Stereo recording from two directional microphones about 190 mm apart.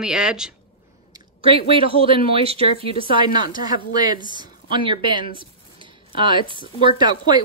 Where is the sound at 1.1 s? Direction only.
30° right (ahead or behind).